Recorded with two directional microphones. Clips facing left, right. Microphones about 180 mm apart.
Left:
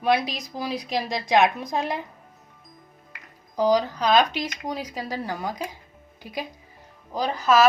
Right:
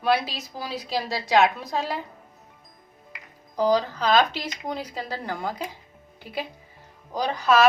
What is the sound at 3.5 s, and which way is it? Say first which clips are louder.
A woman's voice: left 1 dB; 10° left (ahead or behind).